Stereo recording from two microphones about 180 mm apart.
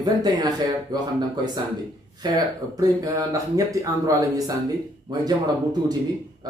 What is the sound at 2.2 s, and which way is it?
Speech, 20° right (ahead or behind).